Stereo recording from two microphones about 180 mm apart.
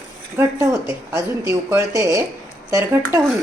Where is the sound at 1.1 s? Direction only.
15° right (ahead or behind).